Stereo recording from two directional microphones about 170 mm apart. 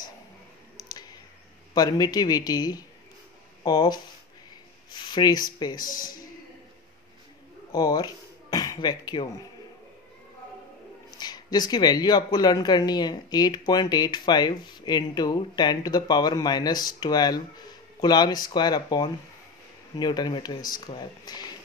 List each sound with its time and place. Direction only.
1.7 s speech: 25° left (ahead or behind)
5.9 s speech: 55° left (ahead or behind)
7.7 s speech: 25° left (ahead or behind)
11.1 s speech: 25° left (ahead or behind)